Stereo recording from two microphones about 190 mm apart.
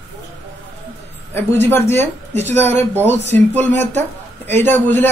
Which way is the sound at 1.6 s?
10° left (ahead or behind).